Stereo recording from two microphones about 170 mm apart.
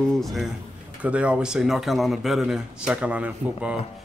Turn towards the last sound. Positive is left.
turn(degrees=-10)  # may be behind; listen again after turning